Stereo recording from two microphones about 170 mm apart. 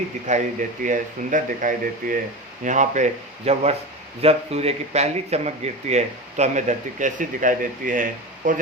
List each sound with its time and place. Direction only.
0.3 s speech: 45° right (ahead or behind)